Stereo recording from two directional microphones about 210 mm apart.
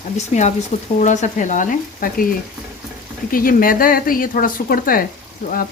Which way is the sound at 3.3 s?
40° left (ahead or behind).